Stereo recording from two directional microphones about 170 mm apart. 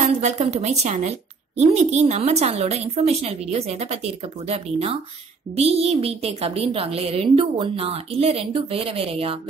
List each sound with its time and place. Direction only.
0.2 s a woman's voice: 40° right (ahead or behind)